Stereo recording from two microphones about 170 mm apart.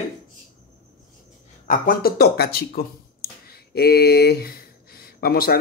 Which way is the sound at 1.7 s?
60° left (ahead or behind).